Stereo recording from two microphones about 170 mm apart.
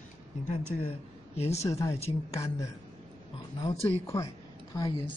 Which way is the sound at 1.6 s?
20° left (ahead or behind).